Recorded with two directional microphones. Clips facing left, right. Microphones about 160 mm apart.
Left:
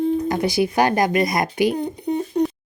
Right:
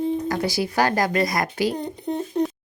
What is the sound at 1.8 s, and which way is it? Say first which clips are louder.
Speech: left 4 dB; centre (ahead or behind).